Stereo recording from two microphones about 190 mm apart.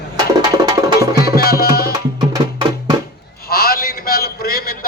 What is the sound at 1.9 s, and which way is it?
Music, 20° right (ahead or behind).